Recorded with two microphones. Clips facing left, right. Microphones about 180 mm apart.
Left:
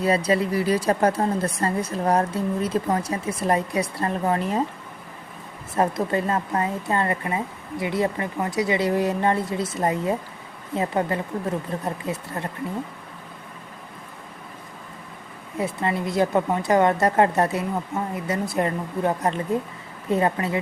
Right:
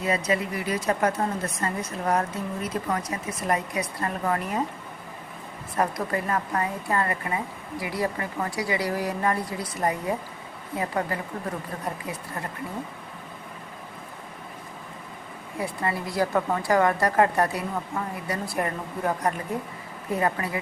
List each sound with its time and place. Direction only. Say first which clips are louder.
0.0 s speech: left 5 dB; 35° left (ahead or behind)
5.7 s a woman's voice: left 4 dB; 25° left (ahead or behind)
15.5 s a woman's voice: left 4 dB; 20° left (ahead or behind)